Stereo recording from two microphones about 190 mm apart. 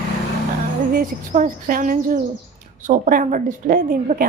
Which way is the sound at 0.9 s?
45° right (ahead or behind).